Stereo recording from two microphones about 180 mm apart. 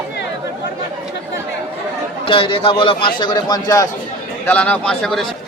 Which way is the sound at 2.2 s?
30° left (ahead or behind).